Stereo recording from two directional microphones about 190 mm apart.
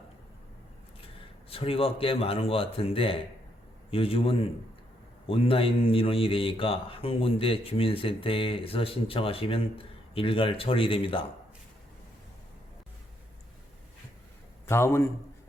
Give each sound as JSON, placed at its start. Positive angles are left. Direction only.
{"t": 1.5, "sound": "a man's voice", "side_deg": 30}
{"t": 14.7, "sound": "a man's voice", "side_deg": 15}